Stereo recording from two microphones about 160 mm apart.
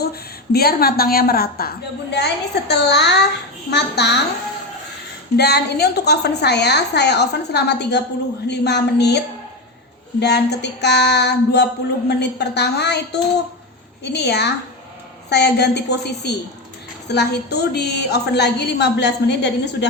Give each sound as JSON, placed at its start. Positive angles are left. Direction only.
{"t": 0.0, "sound": "a woman's voice", "side_deg": 75}
{"t": 3.7, "sound": "female singing", "side_deg": 90}
{"t": 5.4, "sound": "female singing", "side_deg": 90}